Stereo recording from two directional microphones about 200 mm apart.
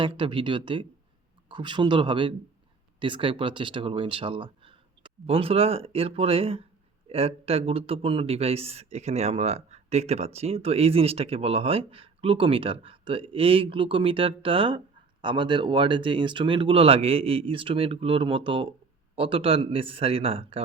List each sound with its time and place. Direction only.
0.0 s speech: 25° right (ahead or behind)